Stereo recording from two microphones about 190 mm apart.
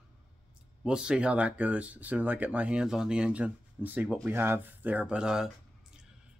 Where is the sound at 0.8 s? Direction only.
5° right (ahead or behind).